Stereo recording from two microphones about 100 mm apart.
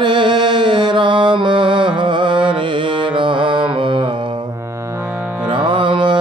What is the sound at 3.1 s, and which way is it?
Mantra, 55° right (ahead or behind).